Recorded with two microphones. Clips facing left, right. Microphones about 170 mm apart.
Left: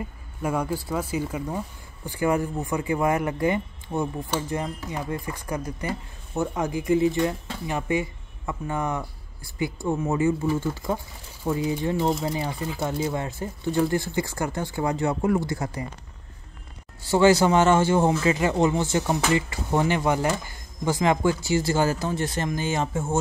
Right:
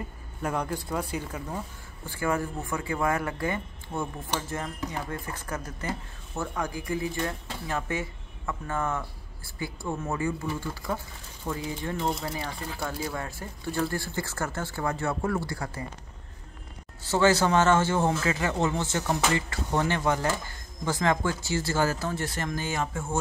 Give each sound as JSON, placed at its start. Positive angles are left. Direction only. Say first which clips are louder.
{"t": 0.4, "sound": "speech", "louder": "left 4 dB", "side_deg": 10}
{"t": 17.1, "sound": "speech", "louder": "left 4 dB", "side_deg": 15}